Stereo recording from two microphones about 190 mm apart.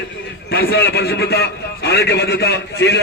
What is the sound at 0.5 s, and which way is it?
A man's voice, 55° left (ahead or behind).